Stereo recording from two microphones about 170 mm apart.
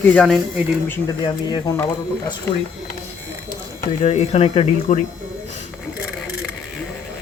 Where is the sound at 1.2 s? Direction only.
25° left (ahead or behind).